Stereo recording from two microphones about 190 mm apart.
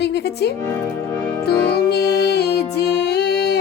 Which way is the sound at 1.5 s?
55° left (ahead or behind).